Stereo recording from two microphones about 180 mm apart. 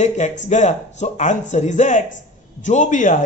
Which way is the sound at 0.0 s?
40° left (ahead or behind).